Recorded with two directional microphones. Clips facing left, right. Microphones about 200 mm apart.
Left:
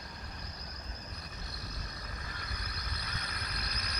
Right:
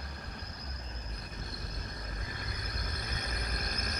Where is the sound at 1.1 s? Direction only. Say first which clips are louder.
Right 3 dB; 50° right (ahead or behind).